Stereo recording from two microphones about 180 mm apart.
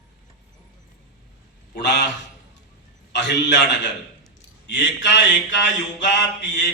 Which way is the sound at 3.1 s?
75° left (ahead or behind).